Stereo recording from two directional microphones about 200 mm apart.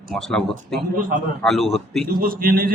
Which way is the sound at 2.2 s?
45° right (ahead or behind).